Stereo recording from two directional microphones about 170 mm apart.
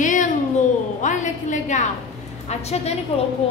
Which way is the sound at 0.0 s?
50° left (ahead or behind).